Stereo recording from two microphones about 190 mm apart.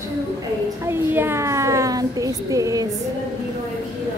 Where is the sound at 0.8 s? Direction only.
10° right (ahead or behind).